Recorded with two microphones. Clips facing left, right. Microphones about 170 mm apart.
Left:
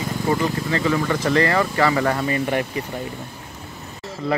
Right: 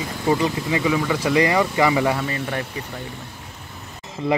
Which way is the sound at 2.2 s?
10° left (ahead or behind).